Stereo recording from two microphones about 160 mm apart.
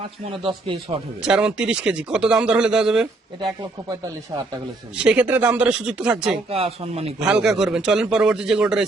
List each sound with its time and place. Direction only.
0.3 s speech: 35° right (ahead or behind)
1.2 s speech: 5° right (ahead or behind)
5.0 s speech: 10° right (ahead or behind)
6.5 s speech: 40° right (ahead or behind)
7.2 s speech: 5° right (ahead or behind)